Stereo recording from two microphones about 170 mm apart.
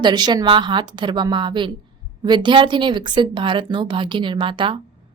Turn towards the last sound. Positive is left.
turn(degrees=-30)  # may be behind; listen again after turning